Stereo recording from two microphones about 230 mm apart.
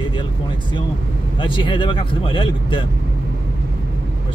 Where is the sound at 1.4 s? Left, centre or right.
Left.